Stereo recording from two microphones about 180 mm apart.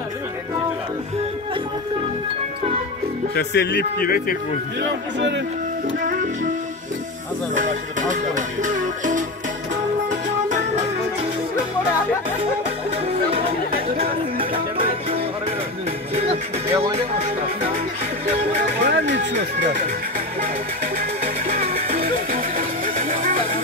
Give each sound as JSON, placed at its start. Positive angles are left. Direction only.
{"t": 3.3, "sound": "a man's voice", "side_deg": 70}
{"t": 7.5, "sound": "music", "side_deg": -45}
{"t": 12.9, "sound": "music", "side_deg": -35}
{"t": 16.2, "sound": "music", "side_deg": -35}
{"t": 18.5, "sound": "music", "side_deg": -55}
{"t": 21.0, "sound": "music", "side_deg": -50}